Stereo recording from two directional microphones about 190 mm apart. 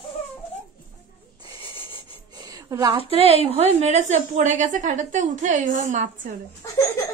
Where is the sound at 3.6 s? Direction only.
35° right (ahead or behind).